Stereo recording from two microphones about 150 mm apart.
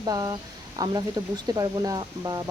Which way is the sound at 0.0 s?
25° right (ahead or behind).